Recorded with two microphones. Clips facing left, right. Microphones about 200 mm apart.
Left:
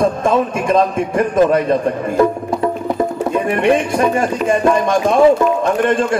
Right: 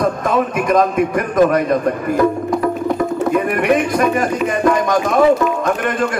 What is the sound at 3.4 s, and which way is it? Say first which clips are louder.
Speech: left 1 dB; 25° left (ahead or behind).